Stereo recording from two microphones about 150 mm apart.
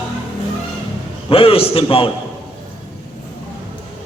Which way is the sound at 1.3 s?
40° left (ahead or behind).